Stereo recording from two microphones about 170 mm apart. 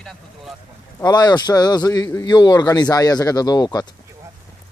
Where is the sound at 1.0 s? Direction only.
25° left (ahead or behind).